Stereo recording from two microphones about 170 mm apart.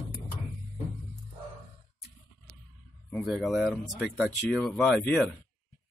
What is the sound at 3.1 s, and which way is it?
Speech, centre (ahead or behind).